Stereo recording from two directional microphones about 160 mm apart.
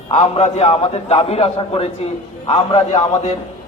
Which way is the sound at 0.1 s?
45° left (ahead or behind).